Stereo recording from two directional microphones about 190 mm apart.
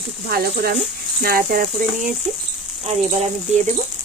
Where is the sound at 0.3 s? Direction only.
55° right (ahead or behind).